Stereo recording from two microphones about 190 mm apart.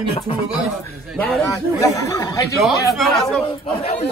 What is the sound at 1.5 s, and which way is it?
Speech, 15° left (ahead or behind).